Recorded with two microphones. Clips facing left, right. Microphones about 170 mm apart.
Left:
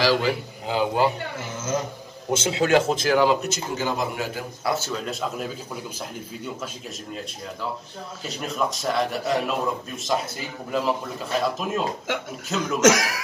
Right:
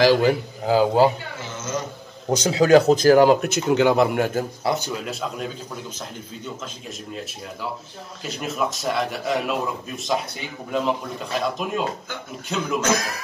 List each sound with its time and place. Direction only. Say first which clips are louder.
0.0 s speech: right 5 dB; 50° right (ahead or behind)
2.4 s speech: right 6 dB; 35° right (ahead or behind)
4.6 s speech: left 1 dB; 15° right (ahead or behind)
5.0 s speech: even; centre (ahead or behind)
8.3 s speech: right 1 dB; 5° right (ahead or behind)
12.1 s speech: left 7 dB; 90° left
12.4 s speech: right 1 dB; centre (ahead or behind)
12.8 s speech: left 5 dB; 90° left